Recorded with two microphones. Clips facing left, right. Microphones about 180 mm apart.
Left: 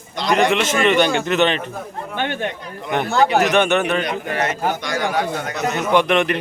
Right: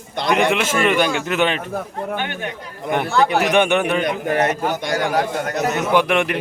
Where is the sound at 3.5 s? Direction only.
10° right (ahead or behind).